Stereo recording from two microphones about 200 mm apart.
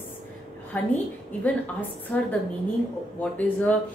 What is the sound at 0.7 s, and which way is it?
Speech, 10° left (ahead or behind).